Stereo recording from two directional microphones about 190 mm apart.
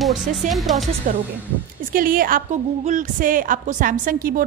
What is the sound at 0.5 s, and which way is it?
Speech, centre (ahead or behind).